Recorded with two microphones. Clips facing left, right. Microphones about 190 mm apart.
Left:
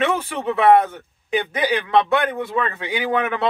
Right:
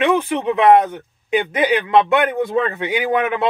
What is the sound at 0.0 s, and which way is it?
Speech, 15° right (ahead or behind).